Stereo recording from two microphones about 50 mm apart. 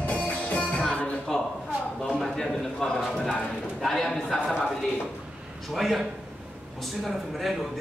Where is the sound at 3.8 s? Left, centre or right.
Centre.